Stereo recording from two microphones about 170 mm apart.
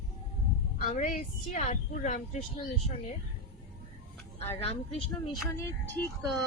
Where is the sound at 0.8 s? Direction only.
50° left (ahead or behind).